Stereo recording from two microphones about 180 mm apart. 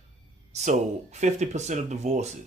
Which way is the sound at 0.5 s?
40° right (ahead or behind).